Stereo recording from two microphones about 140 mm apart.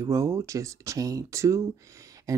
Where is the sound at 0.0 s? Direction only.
20° right (ahead or behind).